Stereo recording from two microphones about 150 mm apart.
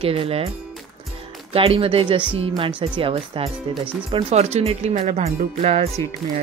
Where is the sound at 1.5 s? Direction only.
40° right (ahead or behind).